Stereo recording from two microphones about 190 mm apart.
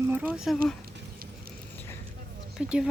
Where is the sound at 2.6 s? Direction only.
5° right (ahead or behind).